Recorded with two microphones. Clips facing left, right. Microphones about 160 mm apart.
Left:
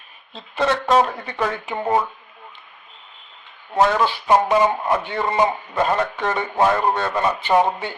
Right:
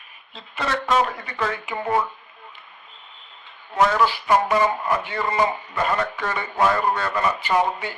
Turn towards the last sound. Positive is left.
turn(degrees=25)  # may be behind; listen again after turning